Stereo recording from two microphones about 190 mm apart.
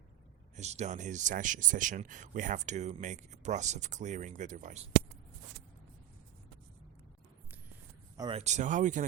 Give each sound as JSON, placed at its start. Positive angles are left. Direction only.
{"t": 0.5, "sound": "speech", "side_deg": -35}
{"t": 8.1, "sound": "speech", "side_deg": -20}
{"t": 8.4, "sound": "speech", "side_deg": -40}